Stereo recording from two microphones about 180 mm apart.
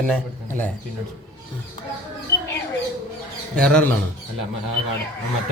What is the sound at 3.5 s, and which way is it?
Speech, 5° left (ahead or behind).